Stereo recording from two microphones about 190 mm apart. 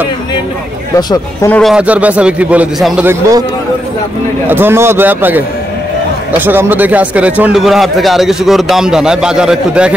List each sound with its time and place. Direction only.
0.9 s speech: 20° left (ahead or behind)
1.5 s a man's voice: centre (ahead or behind)
4.5 s a man's voice: 10° right (ahead or behind)